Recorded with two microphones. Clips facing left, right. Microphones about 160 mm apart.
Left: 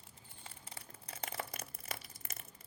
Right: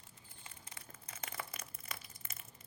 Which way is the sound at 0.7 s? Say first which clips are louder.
Left 3 dB; 35° left (ahead or behind).